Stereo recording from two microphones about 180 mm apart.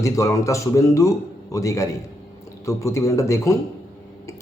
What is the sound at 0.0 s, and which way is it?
Speech, 15° left (ahead or behind).